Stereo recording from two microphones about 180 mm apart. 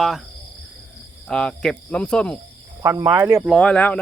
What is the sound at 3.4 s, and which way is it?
Speech, centre (ahead or behind).